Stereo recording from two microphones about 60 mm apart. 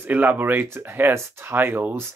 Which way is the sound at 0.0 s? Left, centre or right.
Right.